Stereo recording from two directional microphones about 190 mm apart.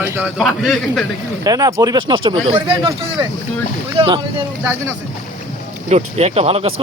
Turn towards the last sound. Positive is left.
turn(degrees=-35)  # may be behind; listen again after turning